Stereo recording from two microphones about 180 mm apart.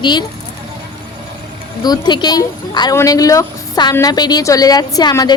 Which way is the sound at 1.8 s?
25° left (ahead or behind).